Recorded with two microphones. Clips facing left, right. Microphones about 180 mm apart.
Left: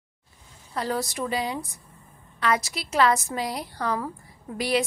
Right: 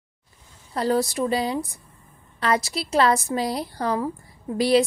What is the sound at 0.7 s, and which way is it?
A woman's voice, 30° right (ahead or behind).